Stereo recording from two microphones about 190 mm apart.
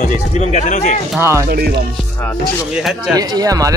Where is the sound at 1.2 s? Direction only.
15° right (ahead or behind).